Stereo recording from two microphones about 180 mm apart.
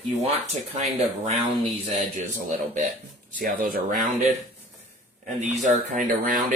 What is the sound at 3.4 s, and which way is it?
Speech, 50° right (ahead or behind).